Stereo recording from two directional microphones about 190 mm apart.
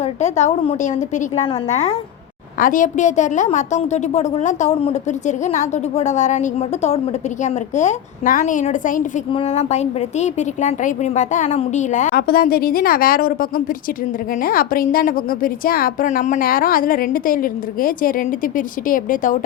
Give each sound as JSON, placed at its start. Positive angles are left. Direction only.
{"t": 0.0, "sound": "a woman's voice", "side_deg": 35}
{"t": 2.6, "sound": "a woman's voice", "side_deg": 45}